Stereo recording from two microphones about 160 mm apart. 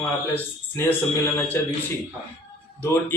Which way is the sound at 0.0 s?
15° left (ahead or behind).